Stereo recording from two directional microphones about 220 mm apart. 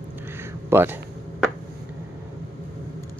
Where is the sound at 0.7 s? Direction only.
10° right (ahead or behind).